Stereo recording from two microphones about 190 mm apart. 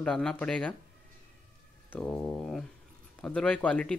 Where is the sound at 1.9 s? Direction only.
5° left (ahead or behind).